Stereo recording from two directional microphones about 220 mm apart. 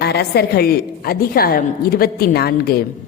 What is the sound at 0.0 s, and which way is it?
A woman's voice, 45° left (ahead or behind).